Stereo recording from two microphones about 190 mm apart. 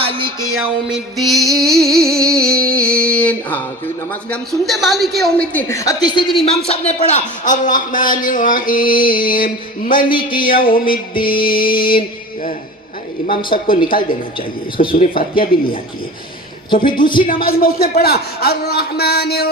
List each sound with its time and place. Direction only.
0.0 s music: 25° right (ahead or behind)
0.4 s music: centre (ahead or behind)
1.7 s a sound: centre (ahead or behind)
4.1 s a woman's voice: 5° left (ahead or behind); by 6.3 s 25° left (ahead or behind)
6.7 s a man's voice: 35° left (ahead or behind)
11.7 s speech: 25° left (ahead or behind)
13.2 s speech: 25° left (ahead or behind)
14.9 s a man's voice: 45° left (ahead or behind)
16.8 s speech: 25° left (ahead or behind)
17.2 s a man's voice: 50° left (ahead or behind)